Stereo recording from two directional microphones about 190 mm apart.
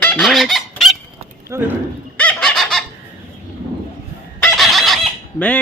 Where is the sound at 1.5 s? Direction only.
10° right (ahead or behind).